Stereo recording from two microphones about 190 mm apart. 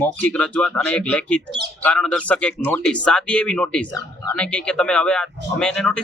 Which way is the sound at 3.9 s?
15° left (ahead or behind).